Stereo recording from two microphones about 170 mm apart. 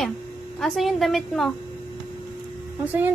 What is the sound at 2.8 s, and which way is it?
Speech, 10° right (ahead or behind).